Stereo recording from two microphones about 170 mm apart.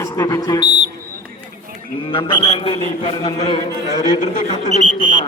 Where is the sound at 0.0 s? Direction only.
20° left (ahead or behind).